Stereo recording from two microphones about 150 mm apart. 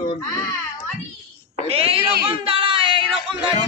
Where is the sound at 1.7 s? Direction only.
40° right (ahead or behind).